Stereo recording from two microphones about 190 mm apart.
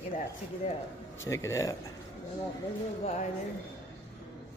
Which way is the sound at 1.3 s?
15° left (ahead or behind).